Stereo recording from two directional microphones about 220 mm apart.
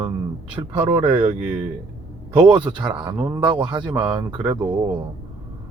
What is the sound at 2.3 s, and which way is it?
Speech, 20° right (ahead or behind).